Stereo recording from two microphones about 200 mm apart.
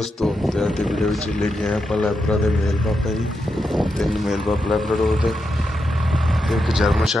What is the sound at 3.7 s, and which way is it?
Speech, centre (ahead or behind).